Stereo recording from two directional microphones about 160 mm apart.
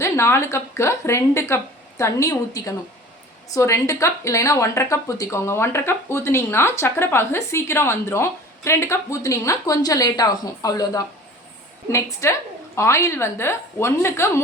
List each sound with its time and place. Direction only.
0.0 s speech: 15° left (ahead or behind)